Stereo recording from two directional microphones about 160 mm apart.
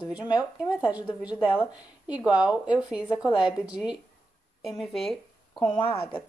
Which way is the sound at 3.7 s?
5° right (ahead or behind).